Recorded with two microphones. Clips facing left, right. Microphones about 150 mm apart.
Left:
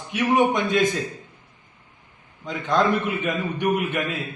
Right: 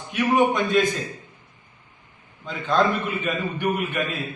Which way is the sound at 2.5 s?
20° left (ahead or behind).